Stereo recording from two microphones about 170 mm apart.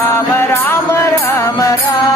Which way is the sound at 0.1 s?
15° left (ahead or behind).